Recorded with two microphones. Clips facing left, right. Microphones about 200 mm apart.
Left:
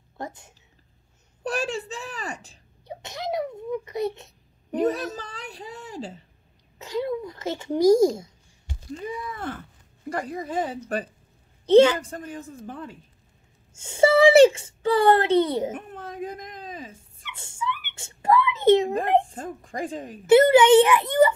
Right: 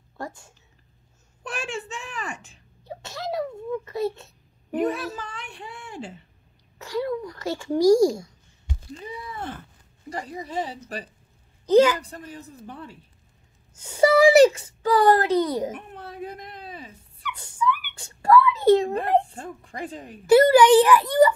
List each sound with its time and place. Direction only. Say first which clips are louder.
0.2 s a child's voice: even; 20° left (ahead or behind)
1.4 s a woman's voice: left 5 dB; 35° left (ahead or behind)
2.8 s a sound: even; 20° left (ahead or behind)
4.7 s speech: left 1 dB; 40° left (ahead or behind)
6.8 s a child's voice: even; 20° left (ahead or behind)
10.0 s a woman's voice: left 4 dB; 55° left (ahead or behind)
11.6 s a woman's voice: left 2 dB; 30° left (ahead or behind)
12.0 s a woman's voice: left 4 dB; 50° left (ahead or behind)
13.7 s a child's voice: even; 25° left (ahead or behind)
15.7 s baby cry: left 2 dB; 45° left (ahead or behind)
17.2 s a sound: right 6 dB; 25° left (ahead or behind)
19.2 s a woman's voice: left 2 dB; 40° left (ahead or behind)
20.2 s a child's voice: even; 25° left (ahead or behind)